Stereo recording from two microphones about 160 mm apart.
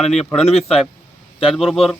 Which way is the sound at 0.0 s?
40° left (ahead or behind).